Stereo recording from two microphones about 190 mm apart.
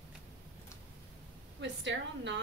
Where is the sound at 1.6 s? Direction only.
70° right (ahead or behind).